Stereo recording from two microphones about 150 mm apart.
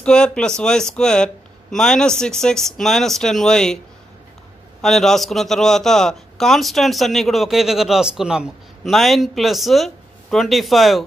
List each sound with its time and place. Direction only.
0.0 s a man's voice: 5° left (ahead or behind)
4.8 s a man's voice: centre (ahead or behind)